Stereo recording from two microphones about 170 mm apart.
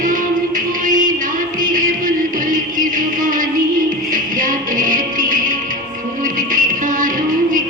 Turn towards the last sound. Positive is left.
turn(degrees=-50)  # may be behind; listen again after turning